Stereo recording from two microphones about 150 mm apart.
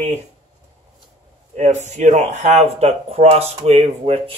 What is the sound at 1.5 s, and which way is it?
Speech, 50° right (ahead or behind).